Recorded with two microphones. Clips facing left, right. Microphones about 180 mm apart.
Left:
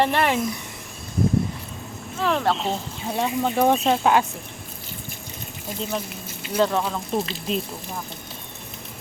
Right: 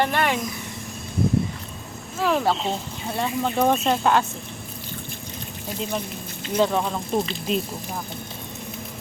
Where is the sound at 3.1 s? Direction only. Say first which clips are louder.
Left 1 dB; 10° left (ahead or behind).